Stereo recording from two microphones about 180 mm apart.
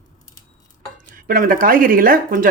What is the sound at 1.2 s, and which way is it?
Speech, 50° right (ahead or behind).